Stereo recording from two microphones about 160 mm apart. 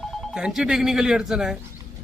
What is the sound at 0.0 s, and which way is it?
A man's voice, 5° left (ahead or behind).